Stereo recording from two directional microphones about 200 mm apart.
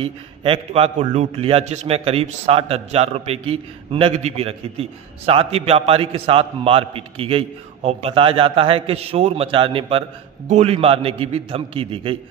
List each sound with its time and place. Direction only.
0.0 s a man's voice: 30° right (ahead or behind)